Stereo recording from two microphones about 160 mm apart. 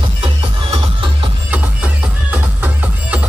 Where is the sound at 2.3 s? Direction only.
10° right (ahead or behind).